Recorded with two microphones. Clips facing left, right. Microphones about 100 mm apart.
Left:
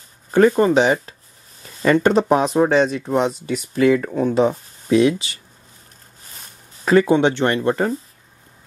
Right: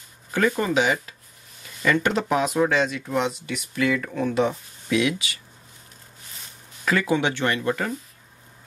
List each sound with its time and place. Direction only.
0.3 s speech: 35° left (ahead or behind)
6.8 s speech: 30° left (ahead or behind)